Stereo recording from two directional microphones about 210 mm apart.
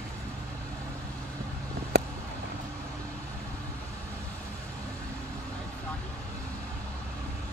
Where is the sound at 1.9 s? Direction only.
50° right (ahead or behind).